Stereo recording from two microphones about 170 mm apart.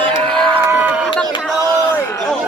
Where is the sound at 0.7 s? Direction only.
10° right (ahead or behind).